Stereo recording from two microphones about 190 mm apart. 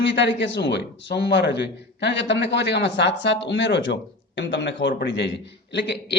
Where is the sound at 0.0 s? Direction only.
65° left (ahead or behind).